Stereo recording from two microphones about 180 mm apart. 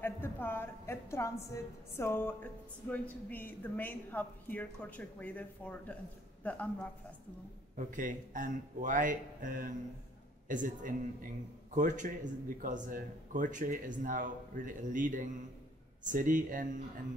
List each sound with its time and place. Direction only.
0.0 s a woman's voice: 10° left (ahead or behind)
7.7 s speech: 45° right (ahead or behind)